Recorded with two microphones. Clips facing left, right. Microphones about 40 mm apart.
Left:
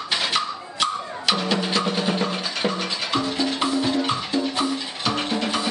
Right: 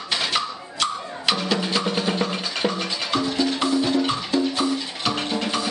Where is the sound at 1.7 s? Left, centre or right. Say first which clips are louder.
Even; centre.